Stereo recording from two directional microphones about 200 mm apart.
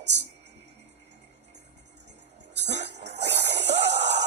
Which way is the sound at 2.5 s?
60° right (ahead or behind).